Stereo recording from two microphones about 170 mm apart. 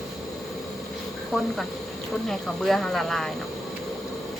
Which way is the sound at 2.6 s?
Centre (ahead or behind).